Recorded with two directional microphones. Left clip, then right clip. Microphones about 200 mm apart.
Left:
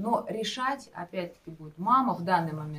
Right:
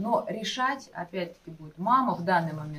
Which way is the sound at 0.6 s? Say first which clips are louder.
Right 2 dB; 20° left (ahead or behind).